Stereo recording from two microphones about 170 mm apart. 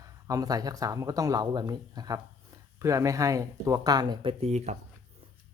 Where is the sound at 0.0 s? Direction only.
20° right (ahead or behind); by 4.8 s 40° right (ahead or behind).